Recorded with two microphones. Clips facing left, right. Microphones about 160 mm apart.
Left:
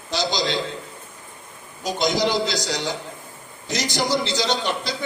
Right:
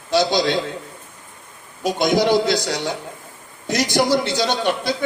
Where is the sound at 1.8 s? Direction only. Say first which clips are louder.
Right 4 dB; 60° right (ahead or behind).